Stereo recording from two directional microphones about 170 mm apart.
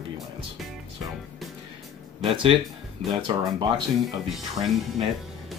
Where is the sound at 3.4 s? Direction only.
25° right (ahead or behind).